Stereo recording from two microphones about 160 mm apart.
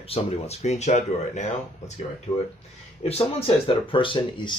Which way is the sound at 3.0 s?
40° left (ahead or behind).